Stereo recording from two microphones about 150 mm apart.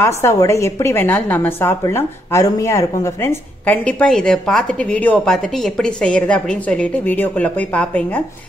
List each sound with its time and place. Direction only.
0.0 s a woman's voice: 20° left (ahead or behind)